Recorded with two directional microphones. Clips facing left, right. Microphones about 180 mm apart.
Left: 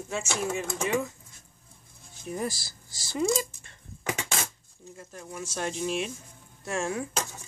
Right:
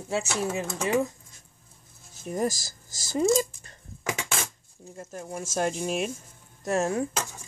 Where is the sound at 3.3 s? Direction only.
40° right (ahead or behind).